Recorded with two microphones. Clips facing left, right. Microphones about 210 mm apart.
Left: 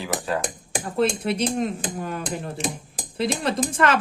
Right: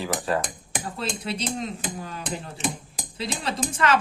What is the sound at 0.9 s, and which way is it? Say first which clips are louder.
Speech: left 10 dB; 55° left (ahead or behind).